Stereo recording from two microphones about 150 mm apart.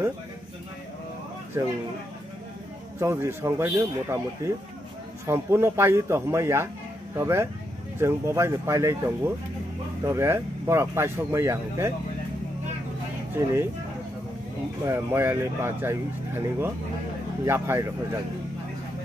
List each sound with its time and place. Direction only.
1.6 s speech: 20° right (ahead or behind)
3.0 s speech: 15° right (ahead or behind)
5.2 s speech: 20° right (ahead or behind)
13.3 s speech: 15° right (ahead or behind)
14.9 s speech: 15° right (ahead or behind)